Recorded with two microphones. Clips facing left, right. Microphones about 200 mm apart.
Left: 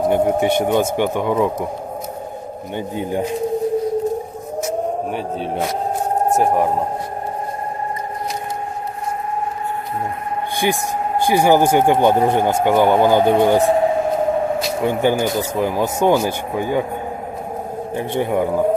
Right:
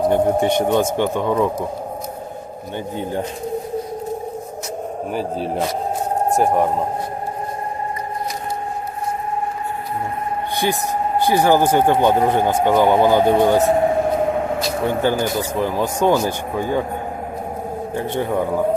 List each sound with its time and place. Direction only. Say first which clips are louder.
0.1 s speech: even; 10° left (ahead or behind)
2.7 s speech: left 2 dB; 15° left (ahead or behind)
5.1 s speech: right 1 dB; centre (ahead or behind)
10.6 s speech: left 1 dB; 15° left (ahead or behind)
14.8 s speech: left 2 dB; 15° left (ahead or behind)
17.9 s speech: left 2 dB; 15° left (ahead or behind)